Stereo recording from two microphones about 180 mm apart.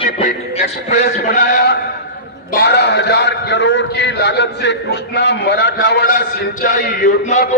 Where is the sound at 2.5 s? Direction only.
65° left (ahead or behind).